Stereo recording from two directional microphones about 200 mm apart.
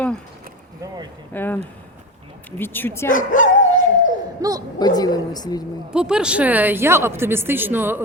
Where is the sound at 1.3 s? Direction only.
10° left (ahead or behind).